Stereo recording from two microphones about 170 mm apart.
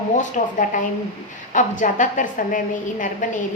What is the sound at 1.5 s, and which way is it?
A woman's voice, 50° left (ahead or behind).